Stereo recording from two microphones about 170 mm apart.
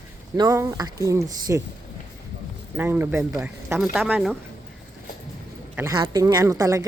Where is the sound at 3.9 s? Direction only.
5° right (ahead or behind).